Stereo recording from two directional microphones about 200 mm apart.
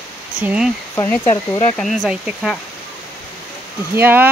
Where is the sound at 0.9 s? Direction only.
15° left (ahead or behind).